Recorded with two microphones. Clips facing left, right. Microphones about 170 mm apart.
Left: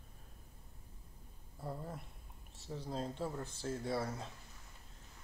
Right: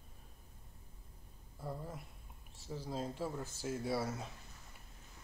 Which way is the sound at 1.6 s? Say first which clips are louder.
Even; centre (ahead or behind).